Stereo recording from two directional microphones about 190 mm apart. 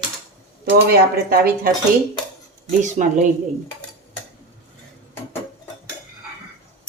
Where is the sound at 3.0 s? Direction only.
45° right (ahead or behind).